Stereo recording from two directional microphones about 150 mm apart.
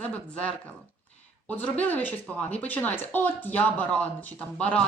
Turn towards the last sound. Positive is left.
turn(degrees=10)  # may be behind; listen again after turning